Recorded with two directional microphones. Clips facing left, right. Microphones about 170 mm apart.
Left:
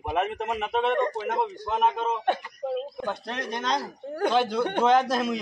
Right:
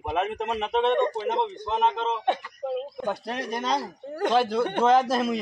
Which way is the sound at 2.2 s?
20° right (ahead or behind).